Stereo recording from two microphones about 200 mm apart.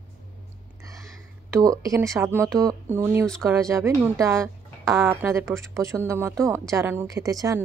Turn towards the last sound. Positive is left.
turn(degrees=-15)  # may be behind; listen again after turning